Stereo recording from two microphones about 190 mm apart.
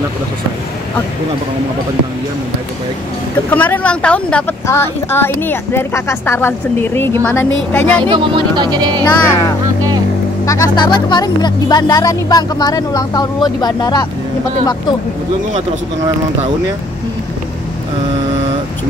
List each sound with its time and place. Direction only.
3.5 s speech: 10° left (ahead or behind)
8.1 s speech: 25° right (ahead or behind)
9.0 s speech: 15° left (ahead or behind)